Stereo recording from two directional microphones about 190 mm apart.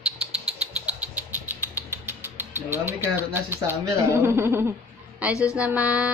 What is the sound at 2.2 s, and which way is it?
Mechanisms, 10° right (ahead or behind).